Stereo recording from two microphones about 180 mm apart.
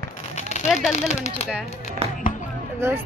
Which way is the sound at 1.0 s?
40° left (ahead or behind).